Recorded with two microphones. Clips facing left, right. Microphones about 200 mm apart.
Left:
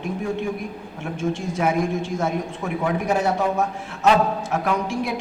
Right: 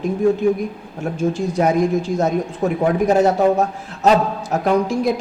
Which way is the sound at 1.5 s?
40° right (ahead or behind).